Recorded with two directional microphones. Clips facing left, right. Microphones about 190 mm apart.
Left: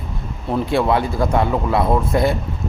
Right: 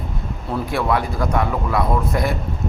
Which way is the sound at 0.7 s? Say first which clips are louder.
Left 3 dB; 25° left (ahead or behind).